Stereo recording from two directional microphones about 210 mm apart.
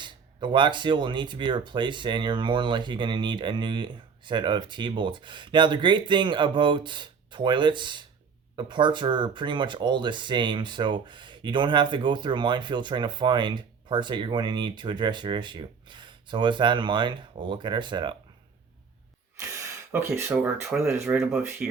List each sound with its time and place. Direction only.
0.0 s speech: 20° right (ahead or behind)
19.4 s speech: 10° right (ahead or behind)